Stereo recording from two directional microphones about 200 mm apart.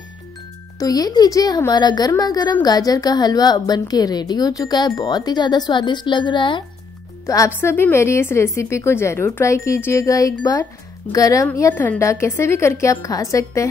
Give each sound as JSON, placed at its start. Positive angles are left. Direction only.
{"t": 0.7, "sound": "a woman's voice", "side_deg": 20}